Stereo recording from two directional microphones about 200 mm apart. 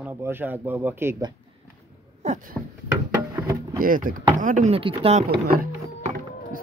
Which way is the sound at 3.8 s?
45° right (ahead or behind).